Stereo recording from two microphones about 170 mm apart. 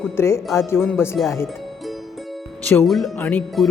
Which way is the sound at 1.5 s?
Centre (ahead or behind).